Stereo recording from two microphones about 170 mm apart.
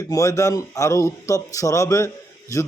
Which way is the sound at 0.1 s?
20° left (ahead or behind).